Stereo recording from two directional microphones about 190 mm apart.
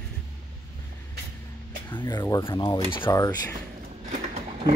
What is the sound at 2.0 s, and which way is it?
Speech, 20° left (ahead or behind).